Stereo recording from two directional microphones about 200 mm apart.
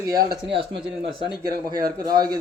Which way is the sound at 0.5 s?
25° right (ahead or behind).